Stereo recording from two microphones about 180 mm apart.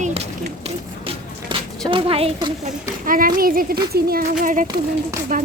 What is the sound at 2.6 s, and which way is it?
A child's voice, 50° right (ahead or behind).